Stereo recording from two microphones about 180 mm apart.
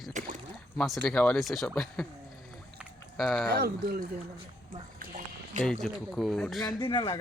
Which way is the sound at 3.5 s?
60° right (ahead or behind).